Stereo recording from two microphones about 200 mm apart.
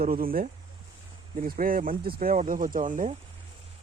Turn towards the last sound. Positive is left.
turn(degrees=-40)  # may be behind; listen again after turning